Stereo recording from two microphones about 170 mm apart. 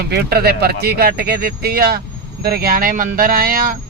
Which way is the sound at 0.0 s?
70° right (ahead or behind).